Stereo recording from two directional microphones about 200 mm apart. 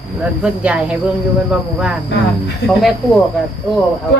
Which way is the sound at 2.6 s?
55° left (ahead or behind).